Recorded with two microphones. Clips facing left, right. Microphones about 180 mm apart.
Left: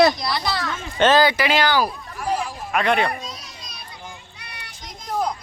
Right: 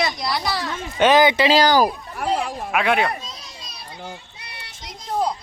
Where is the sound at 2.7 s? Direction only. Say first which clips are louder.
Even; 5° right (ahead or behind).